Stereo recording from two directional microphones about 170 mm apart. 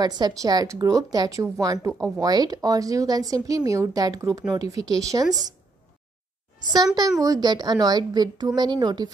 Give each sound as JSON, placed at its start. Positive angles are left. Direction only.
{"t": 0.0, "sound": "speech", "side_deg": -25}
{"t": 7.0, "sound": "speech", "side_deg": -20}